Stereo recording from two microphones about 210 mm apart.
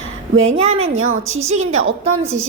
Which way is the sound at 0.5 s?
30° right (ahead or behind).